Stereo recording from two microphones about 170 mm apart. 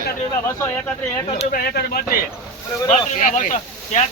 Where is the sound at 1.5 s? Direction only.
60° left (ahead or behind).